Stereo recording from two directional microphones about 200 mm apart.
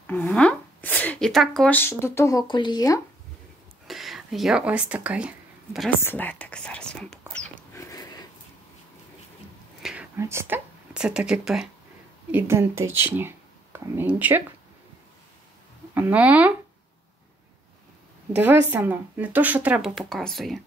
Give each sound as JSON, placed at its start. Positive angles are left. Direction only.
{"t": 0.0, "sound": "speech", "side_deg": 10}
{"t": 3.8, "sound": "a sound", "side_deg": 0}
{"t": 5.9, "sound": "speech", "side_deg": 10}
{"t": 7.7, "sound": "sniff", "side_deg": 15}
{"t": 9.8, "sound": "whispering", "side_deg": 0}
{"t": 10.1, "sound": "speech", "side_deg": -10}
{"t": 15.9, "sound": "speech", "side_deg": -10}
{"t": 18.3, "sound": "speech", "side_deg": -10}